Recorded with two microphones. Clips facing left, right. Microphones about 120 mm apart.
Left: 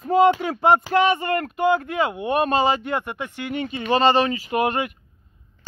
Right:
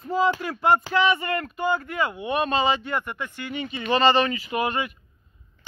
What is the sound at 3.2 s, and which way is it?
Speech, 65° left (ahead or behind).